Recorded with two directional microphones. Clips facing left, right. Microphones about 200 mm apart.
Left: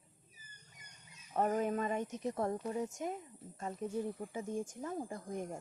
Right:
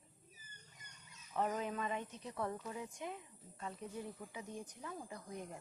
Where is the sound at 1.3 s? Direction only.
45° left (ahead or behind).